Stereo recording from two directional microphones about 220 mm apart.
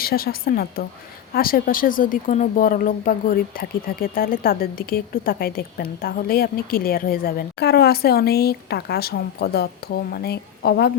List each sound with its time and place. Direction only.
0.0 s speech: 45° left (ahead or behind)